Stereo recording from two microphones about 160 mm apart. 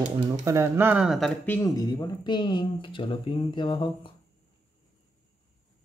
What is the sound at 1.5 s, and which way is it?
Speech, 20° left (ahead or behind).